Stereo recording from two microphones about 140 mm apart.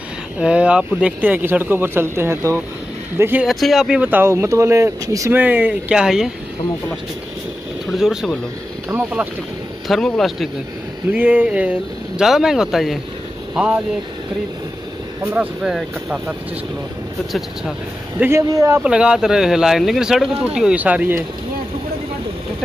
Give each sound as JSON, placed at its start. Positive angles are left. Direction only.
{"t": 0.4, "sound": "speech", "side_deg": -5}
{"t": 3.4, "sound": "speech", "side_deg": 0}
{"t": 7.9, "sound": "speech", "side_deg": -5}
{"t": 9.8, "sound": "speech", "side_deg": 0}
{"t": 11.1, "sound": "speech", "side_deg": -10}
{"t": 15.3, "sound": "speech", "side_deg": -5}
{"t": 18.2, "sound": "speech", "side_deg": -20}
{"t": 18.8, "sound": "speech", "side_deg": -5}